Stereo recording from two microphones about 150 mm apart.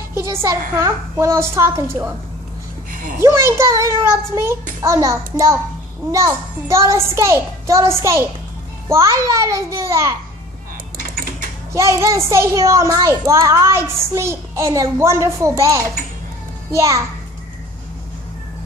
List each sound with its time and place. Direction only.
0.1 s a woman's voice: 20° right (ahead or behind)
3.2 s a woman's voice: 15° right (ahead or behind)
11.0 s a sound: 70° right (ahead or behind)
11.7 s a child's voice: 20° right (ahead or behind)